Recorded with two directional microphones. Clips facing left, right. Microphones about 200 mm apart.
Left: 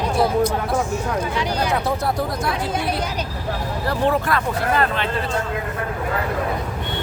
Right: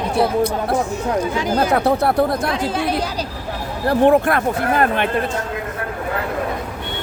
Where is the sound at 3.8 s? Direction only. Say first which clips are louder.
Right 7 dB; 55° right (ahead or behind).